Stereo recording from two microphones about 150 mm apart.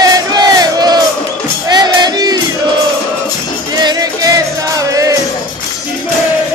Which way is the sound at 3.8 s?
25° right (ahead or behind).